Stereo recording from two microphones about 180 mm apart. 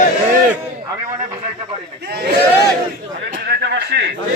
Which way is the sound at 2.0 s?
65° right (ahead or behind).